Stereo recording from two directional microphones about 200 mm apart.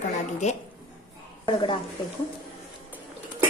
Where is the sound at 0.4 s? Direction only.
35° left (ahead or behind).